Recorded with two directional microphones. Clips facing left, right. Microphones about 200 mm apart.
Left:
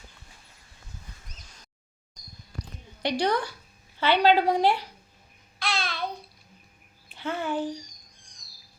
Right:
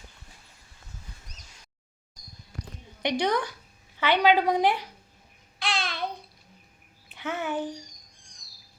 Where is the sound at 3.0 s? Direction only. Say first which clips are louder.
Even; 20° right (ahead or behind).